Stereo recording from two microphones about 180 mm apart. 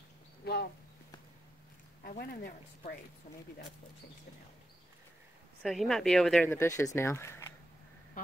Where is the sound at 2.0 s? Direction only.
55° left (ahead or behind).